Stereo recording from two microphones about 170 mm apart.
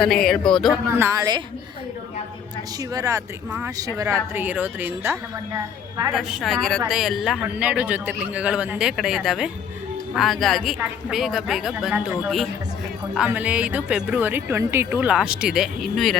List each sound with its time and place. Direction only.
0.0 s a woman's voice: centre (ahead or behind)
0.9 s a woman's voice: 15° right (ahead or behind)
2.9 s a woman's voice: 20° right (ahead or behind)
6.1 s a woman's voice: centre (ahead or behind)